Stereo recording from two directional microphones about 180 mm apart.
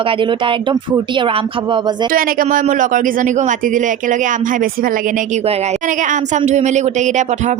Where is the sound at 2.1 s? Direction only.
50° right (ahead or behind).